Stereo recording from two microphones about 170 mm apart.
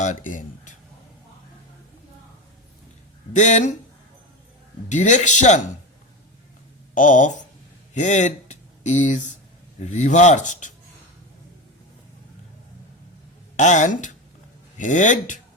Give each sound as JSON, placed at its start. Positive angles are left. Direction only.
{"t": 0.0, "sound": "speech", "side_deg": 50}
{"t": 3.3, "sound": "speech", "side_deg": 45}
{"t": 4.9, "sound": "speech", "side_deg": 45}
{"t": 6.9, "sound": "speech", "side_deg": 50}
{"t": 13.6, "sound": "speech", "side_deg": 45}